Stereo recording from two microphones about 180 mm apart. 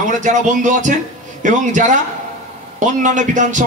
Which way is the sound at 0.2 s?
45° right (ahead or behind).